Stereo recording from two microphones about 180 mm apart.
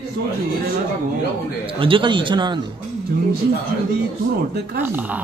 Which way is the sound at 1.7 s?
30° right (ahead or behind).